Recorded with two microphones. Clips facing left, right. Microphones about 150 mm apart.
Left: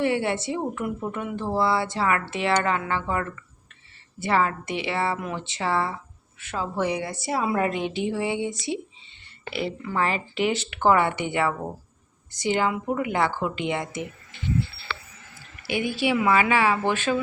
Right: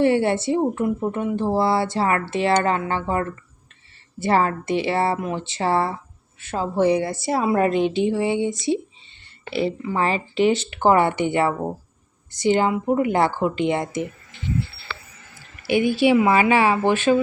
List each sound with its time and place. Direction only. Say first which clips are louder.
0.0 s a woman's voice: right 6 dB; 35° right (ahead or behind)
15.6 s a woman's voice: right 7 dB; 25° right (ahead or behind)